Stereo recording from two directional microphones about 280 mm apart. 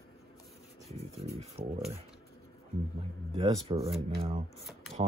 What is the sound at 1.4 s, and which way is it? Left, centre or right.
Speech, centre.